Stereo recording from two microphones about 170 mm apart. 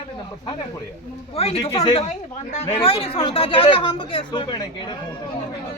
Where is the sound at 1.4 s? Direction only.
35° left (ahead or behind).